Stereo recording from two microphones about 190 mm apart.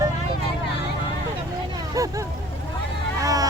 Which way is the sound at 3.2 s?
20° right (ahead or behind).